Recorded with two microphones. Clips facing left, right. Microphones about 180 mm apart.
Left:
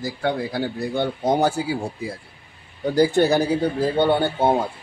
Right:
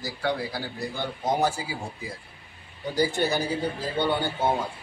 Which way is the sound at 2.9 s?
65° left (ahead or behind).